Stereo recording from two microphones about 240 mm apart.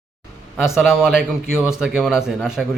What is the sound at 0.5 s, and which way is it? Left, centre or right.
A man's voice, centre.